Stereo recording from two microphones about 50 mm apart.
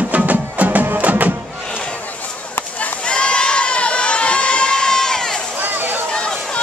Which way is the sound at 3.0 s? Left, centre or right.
Left.